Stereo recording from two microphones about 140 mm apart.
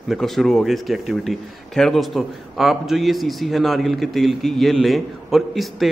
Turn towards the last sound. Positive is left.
turn(degrees=0)  # may be behind; listen again after turning